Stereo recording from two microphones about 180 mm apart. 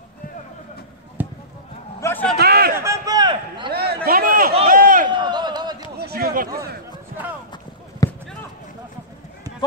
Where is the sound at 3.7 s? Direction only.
60° right (ahead or behind).